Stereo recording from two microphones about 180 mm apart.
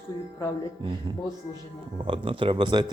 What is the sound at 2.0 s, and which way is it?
Speech, 30° right (ahead or behind).